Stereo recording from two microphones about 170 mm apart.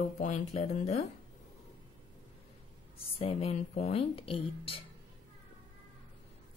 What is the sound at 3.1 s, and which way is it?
Speech, 35° left (ahead or behind).